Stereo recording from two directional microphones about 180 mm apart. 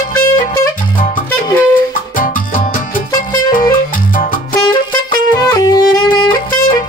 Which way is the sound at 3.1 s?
20° left (ahead or behind).